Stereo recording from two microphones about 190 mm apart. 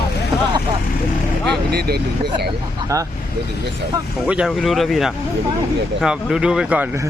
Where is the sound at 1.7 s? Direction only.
55° right (ahead or behind).